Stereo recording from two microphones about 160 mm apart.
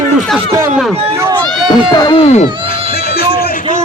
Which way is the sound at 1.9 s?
25° left (ahead or behind).